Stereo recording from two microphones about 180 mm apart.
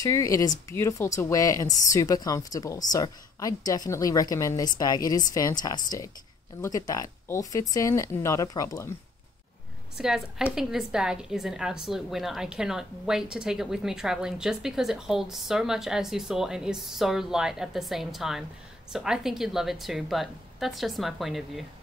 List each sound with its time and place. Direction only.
0.0 s a woman's voice: 20° left (ahead or behind)
9.9 s a woman's voice: 5° right (ahead or behind)